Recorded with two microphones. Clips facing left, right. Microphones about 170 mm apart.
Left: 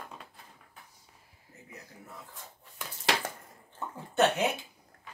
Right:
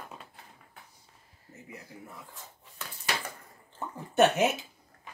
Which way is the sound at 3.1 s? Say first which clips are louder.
Left 4 dB; 90° left.